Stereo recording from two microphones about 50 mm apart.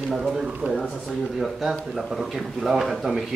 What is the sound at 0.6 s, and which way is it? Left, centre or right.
Speech, right.